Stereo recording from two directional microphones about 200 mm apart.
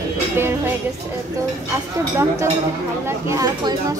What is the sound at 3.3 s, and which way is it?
Speech, 20° right (ahead or behind).